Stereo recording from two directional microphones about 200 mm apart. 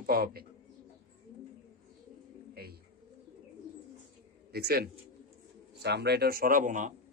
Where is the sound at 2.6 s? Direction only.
50° right (ahead or behind).